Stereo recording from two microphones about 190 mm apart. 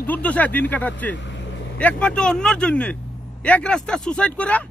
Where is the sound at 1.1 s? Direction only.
70° left (ahead or behind).